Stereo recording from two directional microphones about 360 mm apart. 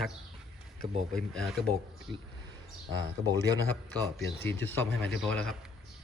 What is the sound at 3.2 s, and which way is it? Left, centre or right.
Speech, centre.